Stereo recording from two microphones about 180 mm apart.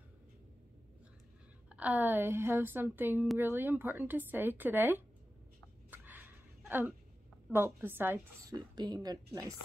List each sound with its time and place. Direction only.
1.7 s speech: 10° right (ahead or behind)
5.9 s a sound: 10° right (ahead or behind)
7.5 s speech: 10° right (ahead or behind)
8.5 s a woman's voice: 20° right (ahead or behind)